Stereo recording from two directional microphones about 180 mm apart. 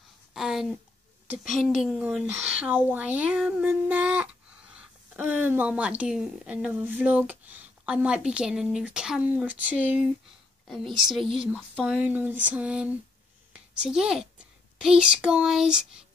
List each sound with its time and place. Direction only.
0.3 s a sound: centre (ahead or behind)
1.5 s a woman's voice: centre (ahead or behind)
11.0 s a woman's voice: centre (ahead or behind)